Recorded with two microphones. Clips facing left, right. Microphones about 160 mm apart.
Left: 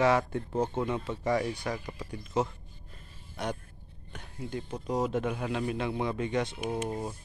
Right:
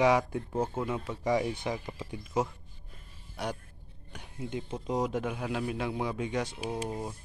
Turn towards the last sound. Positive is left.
turn(degrees=0)  # may be behind; listen again after turning